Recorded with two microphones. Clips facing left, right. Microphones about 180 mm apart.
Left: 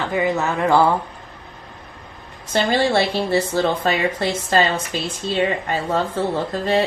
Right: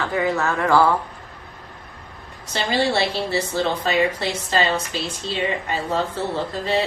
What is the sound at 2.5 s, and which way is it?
A woman's voice, 50° left (ahead or behind).